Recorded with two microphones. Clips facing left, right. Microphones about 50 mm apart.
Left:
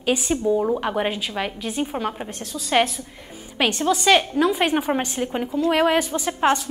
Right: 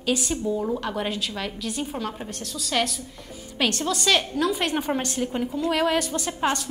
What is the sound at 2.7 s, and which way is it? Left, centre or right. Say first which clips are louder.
A woman's voice: left 6 dB; left.